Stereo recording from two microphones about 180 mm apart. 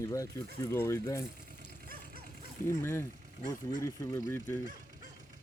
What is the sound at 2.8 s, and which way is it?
Speech, 10° left (ahead or behind).